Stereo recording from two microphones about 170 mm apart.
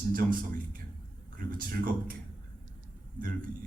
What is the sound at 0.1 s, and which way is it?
A man's voice, 55° right (ahead or behind).